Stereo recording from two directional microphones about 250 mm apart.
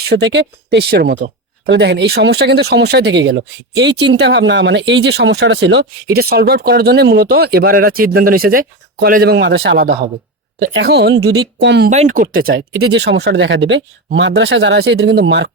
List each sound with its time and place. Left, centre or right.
0.1 s speech: right
11.9 s speech: right
12.3 s speech: right